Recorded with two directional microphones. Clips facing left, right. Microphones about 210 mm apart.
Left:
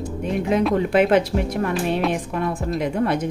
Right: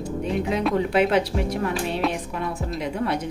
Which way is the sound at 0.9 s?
55° left (ahead or behind).